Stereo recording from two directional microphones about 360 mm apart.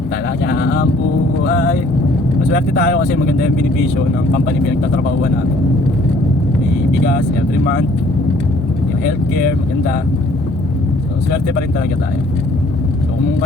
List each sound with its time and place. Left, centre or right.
0.4 s speech: left